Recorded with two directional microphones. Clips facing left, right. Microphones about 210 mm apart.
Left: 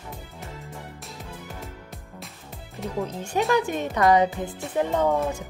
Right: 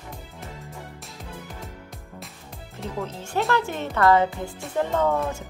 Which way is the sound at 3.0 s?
15° left (ahead or behind).